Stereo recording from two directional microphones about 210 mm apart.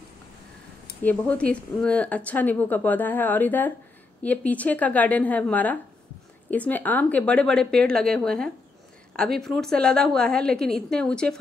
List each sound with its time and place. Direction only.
1.0 s a woman's voice: 5° left (ahead or behind)